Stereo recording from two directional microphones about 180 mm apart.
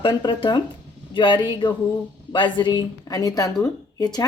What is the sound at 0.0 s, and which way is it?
A woman's voice, 25° left (ahead or behind).